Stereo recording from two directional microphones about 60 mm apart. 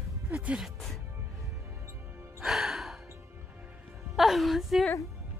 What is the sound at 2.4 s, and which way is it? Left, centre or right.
Music, centre.